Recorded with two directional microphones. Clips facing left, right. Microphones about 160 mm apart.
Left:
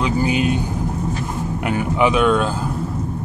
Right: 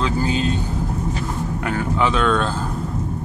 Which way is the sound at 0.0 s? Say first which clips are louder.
Left 2 dB; 15° left (ahead or behind).